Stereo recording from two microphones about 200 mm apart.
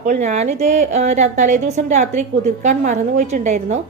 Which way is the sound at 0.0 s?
35° right (ahead or behind).